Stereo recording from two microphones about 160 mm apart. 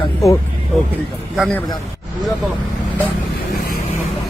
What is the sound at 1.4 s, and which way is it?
Speech, 5° left (ahead or behind).